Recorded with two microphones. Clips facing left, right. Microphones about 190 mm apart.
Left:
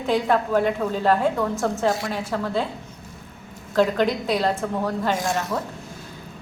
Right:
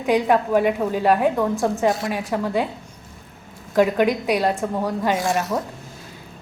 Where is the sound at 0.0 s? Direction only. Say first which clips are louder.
Right 3 dB; 15° right (ahead or behind).